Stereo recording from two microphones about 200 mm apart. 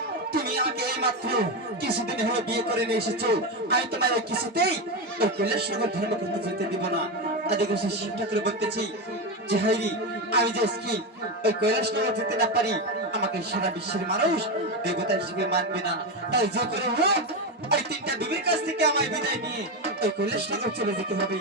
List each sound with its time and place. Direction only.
0.5 s music: 50° right (ahead or behind)
1.3 s speech: 50° right (ahead or behind)
7.4 s speech: 55° right (ahead or behind)